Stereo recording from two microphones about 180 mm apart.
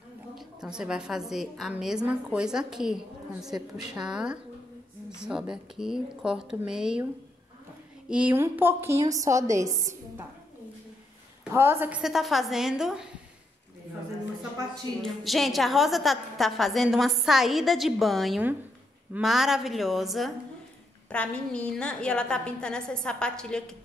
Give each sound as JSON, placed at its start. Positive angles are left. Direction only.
{"t": 0.4, "sound": "a woman's voice", "side_deg": -5}
{"t": 8.1, "sound": "a woman's voice", "side_deg": -10}
{"t": 9.7, "sound": "a woman's voice", "side_deg": -45}
{"t": 11.5, "sound": "a woman's voice", "side_deg": -15}
{"t": 15.0, "sound": "a woman's voice", "side_deg": 0}